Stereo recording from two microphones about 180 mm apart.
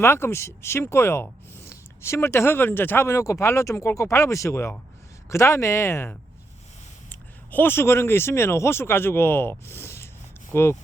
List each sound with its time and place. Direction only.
0.0 s speech: 15° left (ahead or behind)